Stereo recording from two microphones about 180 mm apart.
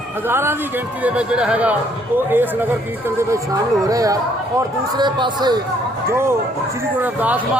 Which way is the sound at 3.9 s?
20° right (ahead or behind).